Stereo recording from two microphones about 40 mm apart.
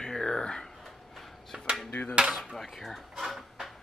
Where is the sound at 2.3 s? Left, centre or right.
Centre.